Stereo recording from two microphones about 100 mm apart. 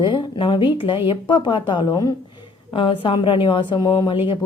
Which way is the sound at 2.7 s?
60° left (ahead or behind).